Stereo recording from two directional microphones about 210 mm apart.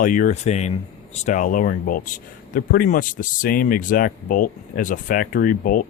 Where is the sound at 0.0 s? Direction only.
40° left (ahead or behind).